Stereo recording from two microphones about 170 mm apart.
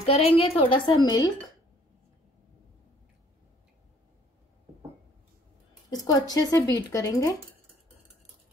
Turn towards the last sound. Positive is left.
turn(degrees=20)  # may be behind; listen again after turning